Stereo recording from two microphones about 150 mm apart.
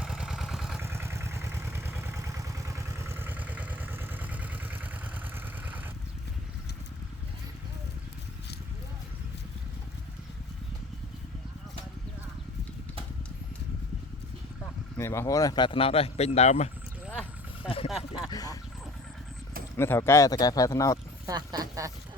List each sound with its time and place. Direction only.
0.0 s vehicle: 5° right (ahead or behind)
0.8 s vehicle: 15° right (ahead or behind)
14.9 s speech: 15° left (ahead or behind); by 16.6 s 45° left (ahead or behind)
17.8 s a sound: 5° right (ahead or behind)
18.3 s a sound: 25° left (ahead or behind)
19.7 s speech: 15° left (ahead or behind)
21.2 s speech: 25° right (ahead or behind)